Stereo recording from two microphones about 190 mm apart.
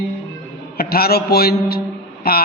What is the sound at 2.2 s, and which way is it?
Music, 55° left (ahead or behind).